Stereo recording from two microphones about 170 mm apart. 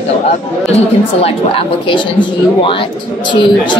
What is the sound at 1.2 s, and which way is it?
Speech, 35° left (ahead or behind).